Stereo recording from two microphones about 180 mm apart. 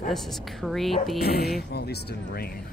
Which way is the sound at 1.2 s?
60° left (ahead or behind).